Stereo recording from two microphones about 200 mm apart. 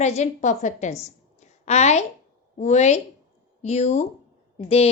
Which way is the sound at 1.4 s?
35° left (ahead or behind).